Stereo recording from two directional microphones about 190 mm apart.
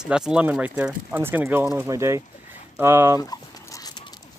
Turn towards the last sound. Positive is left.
turn(degrees=20)  # may be behind; listen again after turning